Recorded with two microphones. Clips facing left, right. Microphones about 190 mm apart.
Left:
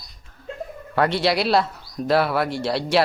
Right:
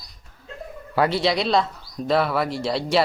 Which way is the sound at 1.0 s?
Centre (ahead or behind).